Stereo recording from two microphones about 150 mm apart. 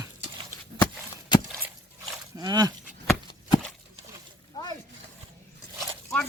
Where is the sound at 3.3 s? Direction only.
30° left (ahead or behind).